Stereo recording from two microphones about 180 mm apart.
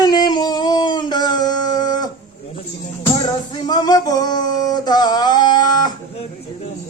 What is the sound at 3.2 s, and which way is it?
Male singing, 25° left (ahead or behind).